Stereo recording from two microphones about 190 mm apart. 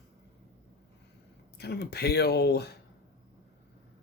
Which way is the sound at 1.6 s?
60° left (ahead or behind).